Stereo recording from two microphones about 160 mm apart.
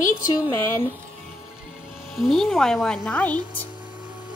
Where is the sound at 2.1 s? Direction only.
Centre (ahead or behind).